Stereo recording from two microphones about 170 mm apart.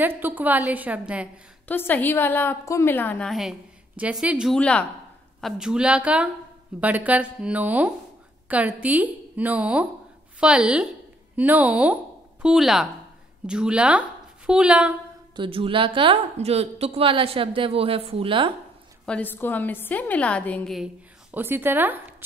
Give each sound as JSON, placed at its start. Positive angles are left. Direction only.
{"t": 0.0, "sound": "a woman's voice", "side_deg": -10}
{"t": 1.7, "sound": "a woman's voice", "side_deg": 10}
{"t": 4.6, "sound": "a woman's voice", "side_deg": 5}
{"t": 5.4, "sound": "a woman's voice", "side_deg": -5}
{"t": 15.3, "sound": "a woman's voice", "side_deg": -30}
{"t": 19.0, "sound": "a woman's voice", "side_deg": 10}